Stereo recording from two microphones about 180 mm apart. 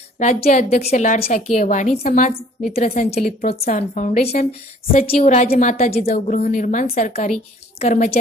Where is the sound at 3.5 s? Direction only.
35° left (ahead or behind).